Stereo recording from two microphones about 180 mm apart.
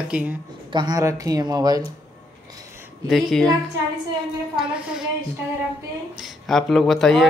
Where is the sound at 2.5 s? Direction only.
20° right (ahead or behind).